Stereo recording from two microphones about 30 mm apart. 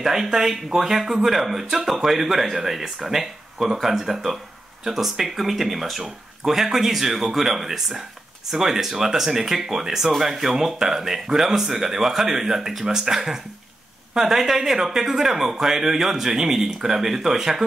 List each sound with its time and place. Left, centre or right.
0.0 s speech: centre